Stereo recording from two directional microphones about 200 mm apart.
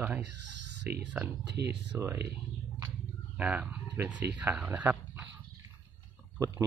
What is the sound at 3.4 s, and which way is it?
Speech, 5° right (ahead or behind).